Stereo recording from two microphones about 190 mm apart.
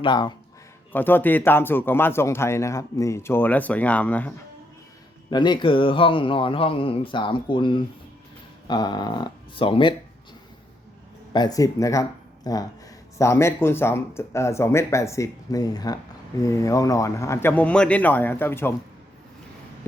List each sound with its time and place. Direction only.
0.0 s speech: 25° left (ahead or behind)
0.9 s speech: 10° left (ahead or behind)
5.3 s speech: 25° left (ahead or behind)
11.3 s speech: 20° left (ahead or behind)